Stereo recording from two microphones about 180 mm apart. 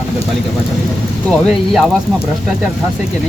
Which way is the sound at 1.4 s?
Centre (ahead or behind).